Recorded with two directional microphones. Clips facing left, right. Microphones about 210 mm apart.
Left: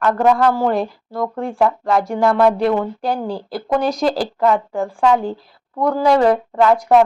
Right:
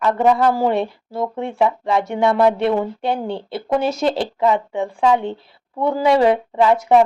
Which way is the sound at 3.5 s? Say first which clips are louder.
Left 1 dB; 5° right (ahead or behind).